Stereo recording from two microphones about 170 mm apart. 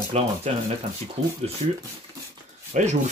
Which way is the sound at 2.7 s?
45° right (ahead or behind).